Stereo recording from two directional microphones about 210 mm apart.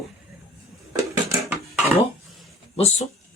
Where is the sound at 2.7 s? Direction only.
30° left (ahead or behind).